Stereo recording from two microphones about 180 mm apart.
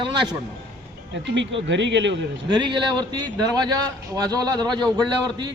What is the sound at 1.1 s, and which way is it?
Speech, 85° right.